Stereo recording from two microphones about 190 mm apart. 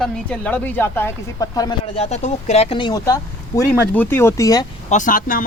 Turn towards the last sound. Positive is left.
turn(degrees=45)  # may be behind; listen again after turning